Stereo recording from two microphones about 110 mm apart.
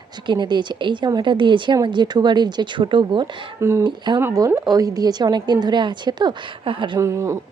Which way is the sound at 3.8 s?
45° right (ahead or behind).